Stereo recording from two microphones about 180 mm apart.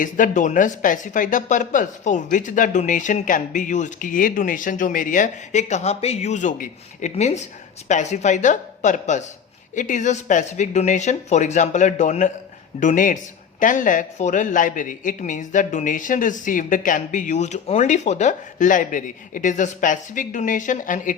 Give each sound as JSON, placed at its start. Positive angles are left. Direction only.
{"t": 0.0, "sound": "speech", "side_deg": 45}